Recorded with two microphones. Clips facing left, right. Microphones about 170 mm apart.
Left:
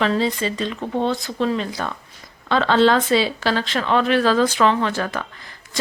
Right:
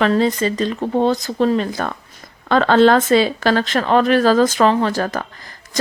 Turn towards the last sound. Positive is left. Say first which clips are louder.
# right 4 dB
turn(degrees=-40)  # may be behind; listen again after turning